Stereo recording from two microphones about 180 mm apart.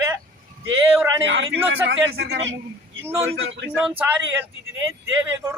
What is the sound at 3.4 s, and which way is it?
Speech, 85° right.